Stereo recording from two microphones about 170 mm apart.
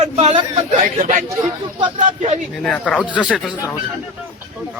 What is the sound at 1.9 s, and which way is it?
Speech, 40° right (ahead or behind).